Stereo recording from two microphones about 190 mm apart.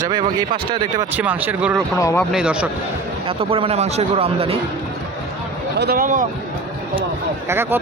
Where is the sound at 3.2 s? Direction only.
30° right (ahead or behind).